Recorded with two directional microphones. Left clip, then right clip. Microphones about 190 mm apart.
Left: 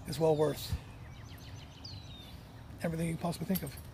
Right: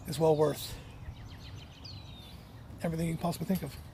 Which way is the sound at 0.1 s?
20° right (ahead or behind).